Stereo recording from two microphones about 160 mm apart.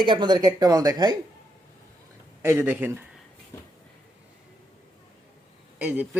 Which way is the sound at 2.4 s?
10° right (ahead or behind).